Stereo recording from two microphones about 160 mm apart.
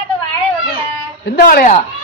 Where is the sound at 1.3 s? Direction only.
70° left (ahead or behind).